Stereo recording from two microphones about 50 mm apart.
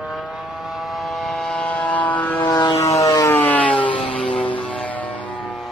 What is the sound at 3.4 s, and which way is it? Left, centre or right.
Siren, left.